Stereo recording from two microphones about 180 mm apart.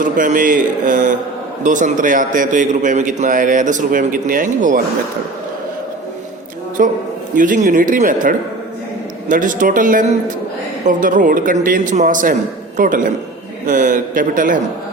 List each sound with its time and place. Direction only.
0.0 s a man's voice: 45° right (ahead or behind)
6.8 s a man's voice: 50° right (ahead or behind)